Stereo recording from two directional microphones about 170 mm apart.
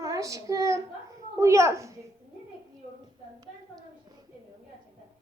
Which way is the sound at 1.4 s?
15° right (ahead or behind).